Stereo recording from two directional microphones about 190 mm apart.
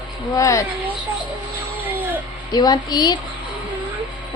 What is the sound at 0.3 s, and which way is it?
Speech, 15° left (ahead or behind).